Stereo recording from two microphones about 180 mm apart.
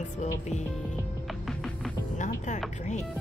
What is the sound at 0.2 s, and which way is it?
Speech, 40° left (ahead or behind).